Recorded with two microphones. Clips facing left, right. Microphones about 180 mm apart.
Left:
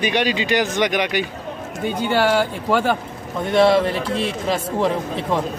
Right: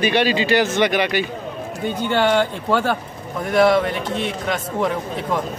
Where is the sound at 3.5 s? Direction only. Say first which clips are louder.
Left 1 dB; 25° left (ahead or behind).